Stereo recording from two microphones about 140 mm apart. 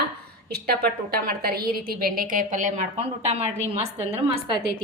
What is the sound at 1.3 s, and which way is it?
A woman's voice, 90° right.